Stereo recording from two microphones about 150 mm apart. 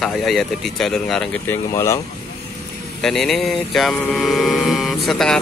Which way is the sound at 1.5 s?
20° left (ahead or behind).